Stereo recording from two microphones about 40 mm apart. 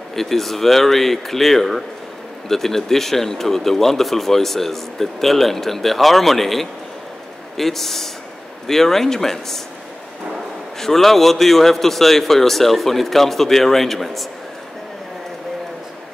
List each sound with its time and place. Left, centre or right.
0.1 s a man's voice: centre
10.8 s a man's voice: centre